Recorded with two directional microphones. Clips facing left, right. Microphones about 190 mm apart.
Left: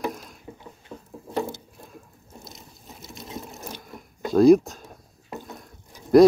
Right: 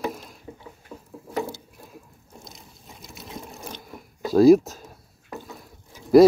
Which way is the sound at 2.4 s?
5° left (ahead or behind).